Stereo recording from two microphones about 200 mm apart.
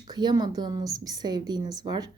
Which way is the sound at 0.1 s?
20° right (ahead or behind).